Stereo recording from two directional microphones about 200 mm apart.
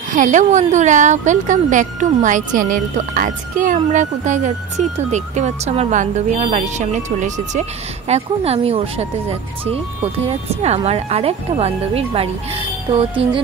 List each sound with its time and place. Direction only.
0.1 s speech: 40° right (ahead or behind)
10.2 s speech: 30° right (ahead or behind)